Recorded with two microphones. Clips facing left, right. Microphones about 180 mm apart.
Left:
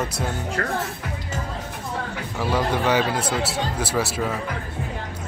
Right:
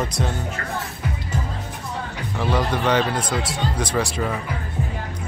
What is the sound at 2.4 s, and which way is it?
Speech, 10° left (ahead or behind).